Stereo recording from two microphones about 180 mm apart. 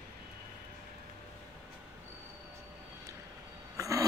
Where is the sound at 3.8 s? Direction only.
20° right (ahead or behind).